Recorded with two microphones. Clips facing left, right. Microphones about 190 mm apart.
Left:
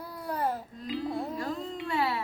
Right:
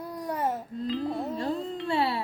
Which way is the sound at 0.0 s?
20° right (ahead or behind).